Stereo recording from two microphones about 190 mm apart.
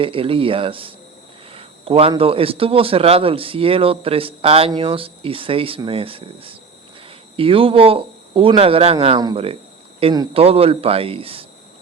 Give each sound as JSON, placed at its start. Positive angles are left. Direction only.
{"t": 0.0, "sound": "speech", "side_deg": -30}